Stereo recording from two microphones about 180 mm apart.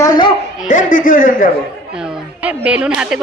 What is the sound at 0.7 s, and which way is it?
Speech, 45° left (ahead or behind).